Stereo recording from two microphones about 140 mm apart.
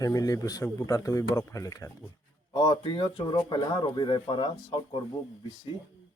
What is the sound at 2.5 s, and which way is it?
Speech, 35° left (ahead or behind).